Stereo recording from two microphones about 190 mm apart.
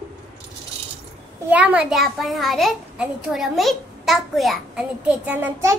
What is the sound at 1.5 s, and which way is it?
A child's voice, 10° right (ahead or behind).